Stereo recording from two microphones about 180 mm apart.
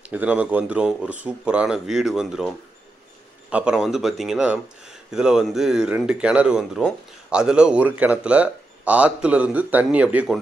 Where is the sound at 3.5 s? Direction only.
5° right (ahead or behind).